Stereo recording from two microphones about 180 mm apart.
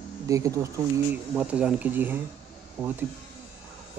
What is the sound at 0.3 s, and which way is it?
Speech, 15° right (ahead or behind).